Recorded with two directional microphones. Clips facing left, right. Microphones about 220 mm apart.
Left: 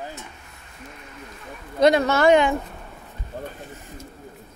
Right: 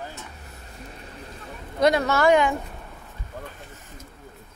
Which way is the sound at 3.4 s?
30° left (ahead or behind).